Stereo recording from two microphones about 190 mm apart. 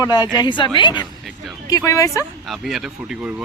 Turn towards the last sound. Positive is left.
turn(degrees=-5)  # may be behind; listen again after turning